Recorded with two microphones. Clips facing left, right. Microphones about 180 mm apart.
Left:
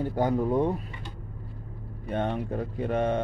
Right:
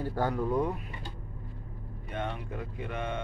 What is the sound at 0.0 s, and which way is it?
Speech, 20° left (ahead or behind).